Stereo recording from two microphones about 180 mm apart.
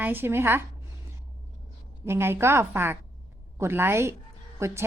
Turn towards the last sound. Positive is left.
turn(degrees=-15)  # may be behind; listen again after turning